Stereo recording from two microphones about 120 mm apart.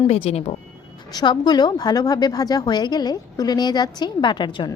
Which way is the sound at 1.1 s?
40° left (ahead or behind).